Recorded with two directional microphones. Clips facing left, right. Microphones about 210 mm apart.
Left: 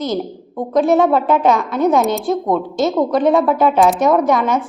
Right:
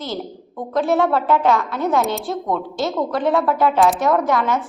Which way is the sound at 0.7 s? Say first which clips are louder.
Left 5 dB; 20° left (ahead or behind).